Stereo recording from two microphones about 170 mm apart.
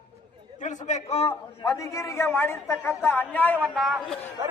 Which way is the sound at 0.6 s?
45° left (ahead or behind).